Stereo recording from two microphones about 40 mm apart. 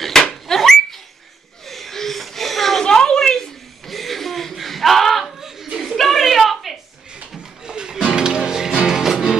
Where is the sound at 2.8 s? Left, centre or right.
Centre.